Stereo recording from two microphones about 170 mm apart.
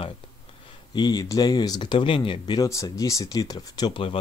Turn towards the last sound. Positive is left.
turn(degrees=30)  # may be behind; listen again after turning